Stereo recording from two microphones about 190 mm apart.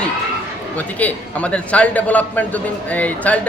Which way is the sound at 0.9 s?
5° left (ahead or behind).